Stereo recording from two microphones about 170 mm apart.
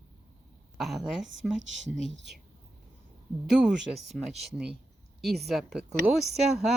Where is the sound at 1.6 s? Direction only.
90° right.